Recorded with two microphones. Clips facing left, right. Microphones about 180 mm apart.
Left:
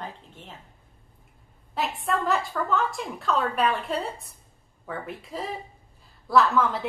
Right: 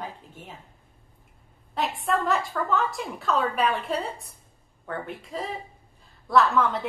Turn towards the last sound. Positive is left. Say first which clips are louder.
# even
turn(degrees=0)  # may be behind; listen again after turning